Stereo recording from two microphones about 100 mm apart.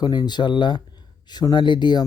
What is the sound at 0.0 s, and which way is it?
Speech, 45° left (ahead or behind).